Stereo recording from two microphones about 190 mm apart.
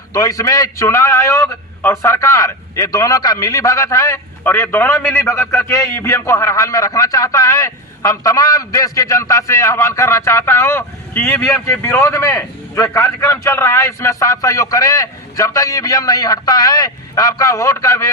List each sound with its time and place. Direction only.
0.1 s a man's voice: 15° left (ahead or behind)